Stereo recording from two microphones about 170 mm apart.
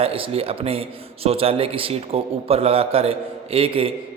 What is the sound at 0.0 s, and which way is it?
A man's voice, 35° right (ahead or behind).